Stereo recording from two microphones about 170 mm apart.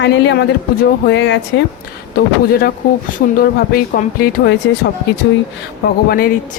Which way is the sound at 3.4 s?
60° left (ahead or behind).